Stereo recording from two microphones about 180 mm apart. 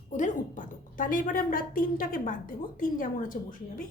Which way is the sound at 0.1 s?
45° left (ahead or behind).